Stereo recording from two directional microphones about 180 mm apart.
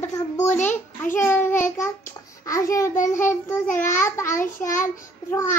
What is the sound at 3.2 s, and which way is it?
Child singing, 15° left (ahead or behind).